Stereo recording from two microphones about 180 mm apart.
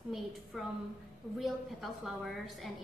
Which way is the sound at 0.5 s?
Centre (ahead or behind).